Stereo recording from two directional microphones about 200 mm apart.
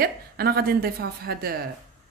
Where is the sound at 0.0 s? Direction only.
50° right (ahead or behind).